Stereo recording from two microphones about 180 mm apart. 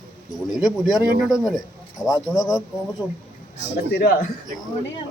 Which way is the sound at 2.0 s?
20° left (ahead or behind).